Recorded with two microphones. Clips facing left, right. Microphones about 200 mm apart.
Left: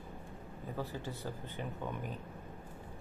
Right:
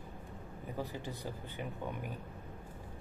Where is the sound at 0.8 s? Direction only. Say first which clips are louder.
Even; 15° right (ahead or behind).